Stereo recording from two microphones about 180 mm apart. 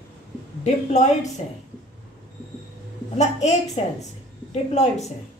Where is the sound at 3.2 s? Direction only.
40° left (ahead or behind).